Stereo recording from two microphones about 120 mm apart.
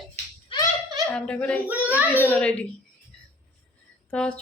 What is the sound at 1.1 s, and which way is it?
Speech, 10° left (ahead or behind).